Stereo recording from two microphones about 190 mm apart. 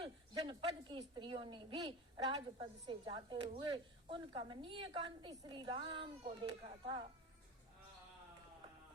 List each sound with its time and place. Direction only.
0.0 s a woman's voice: 25° right (ahead or behind)